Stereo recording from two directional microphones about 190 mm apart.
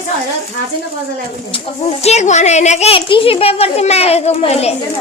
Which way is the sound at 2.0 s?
35° left (ahead or behind).